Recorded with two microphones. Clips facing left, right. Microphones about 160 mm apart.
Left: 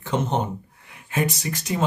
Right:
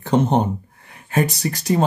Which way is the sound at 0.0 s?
35° right (ahead or behind).